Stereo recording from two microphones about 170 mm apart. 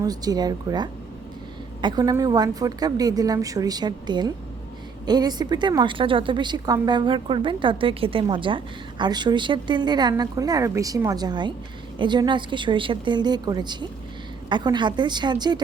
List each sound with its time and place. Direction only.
0.0 s a woman's voice: 20° right (ahead or behind)